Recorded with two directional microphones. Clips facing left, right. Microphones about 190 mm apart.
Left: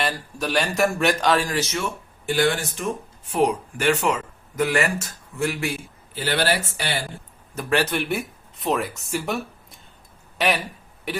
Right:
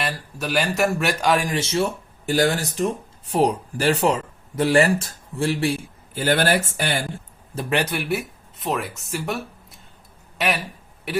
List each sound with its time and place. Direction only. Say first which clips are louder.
0.0 s a man's voice: left 2 dB; 5° right (ahead or behind)
1.5 s speech: right 3 dB; 30° right (ahead or behind)
6.1 s speech: right 3 dB; 45° right (ahead or behind)
7.7 s speech: left 1 dB; 20° right (ahead or behind)
7.9 s a man's voice: even; 5° right (ahead or behind)